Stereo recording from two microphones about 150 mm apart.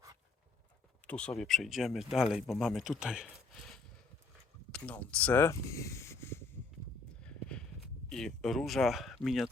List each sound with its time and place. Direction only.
1.0 s speech: 10° left (ahead or behind)
4.7 s speech: 10° left (ahead or behind)
7.2 s clip-clop: 5° left (ahead or behind)
8.1 s speech: centre (ahead or behind)